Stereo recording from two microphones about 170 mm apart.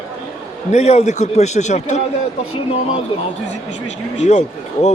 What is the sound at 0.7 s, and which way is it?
A man's voice, 40° left (ahead or behind).